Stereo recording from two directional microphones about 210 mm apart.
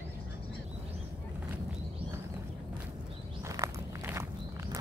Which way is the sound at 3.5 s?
15° right (ahead or behind).